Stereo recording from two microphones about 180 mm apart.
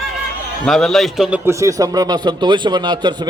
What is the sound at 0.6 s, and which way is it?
A man's voice, centre (ahead or behind).